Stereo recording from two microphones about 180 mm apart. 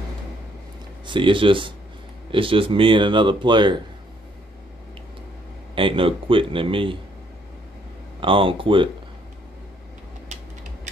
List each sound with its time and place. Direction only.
1.0 s speech: 25° right (ahead or behind)
5.8 s speech: 30° right (ahead or behind)
8.2 s speech: 30° right (ahead or behind)